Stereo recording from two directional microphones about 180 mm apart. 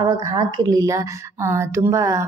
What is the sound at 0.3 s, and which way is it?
A woman's voice, 20° right (ahead or behind).